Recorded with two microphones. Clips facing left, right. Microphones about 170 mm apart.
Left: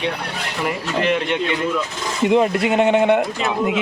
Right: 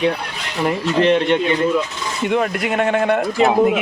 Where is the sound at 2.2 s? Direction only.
25° left (ahead or behind).